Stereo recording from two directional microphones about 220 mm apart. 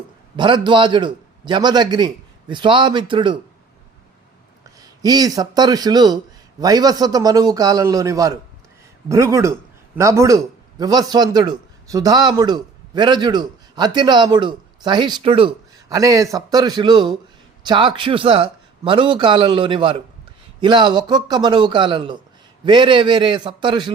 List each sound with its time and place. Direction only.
0.3 s a man's voice: 20° right (ahead or behind)
4.8 s a man's voice: 15° right (ahead or behind)